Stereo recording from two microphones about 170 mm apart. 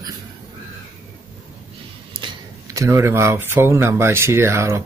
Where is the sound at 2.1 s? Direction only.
25° right (ahead or behind).